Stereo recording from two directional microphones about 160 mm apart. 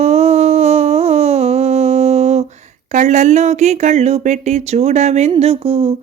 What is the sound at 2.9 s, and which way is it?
Speech, 50° right (ahead or behind).